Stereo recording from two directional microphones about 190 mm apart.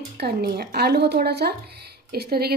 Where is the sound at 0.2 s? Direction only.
55° right (ahead or behind).